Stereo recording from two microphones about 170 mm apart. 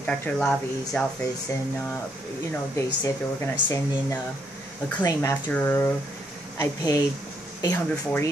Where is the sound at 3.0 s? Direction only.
15° left (ahead or behind).